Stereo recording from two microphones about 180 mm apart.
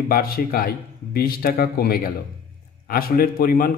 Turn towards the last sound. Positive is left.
turn(degrees=55)  # may be behind; listen again after turning